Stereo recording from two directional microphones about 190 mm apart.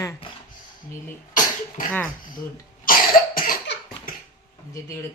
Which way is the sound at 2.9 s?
50° left (ahead or behind).